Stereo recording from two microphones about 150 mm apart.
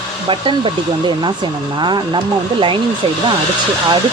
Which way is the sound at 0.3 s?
35° right (ahead or behind).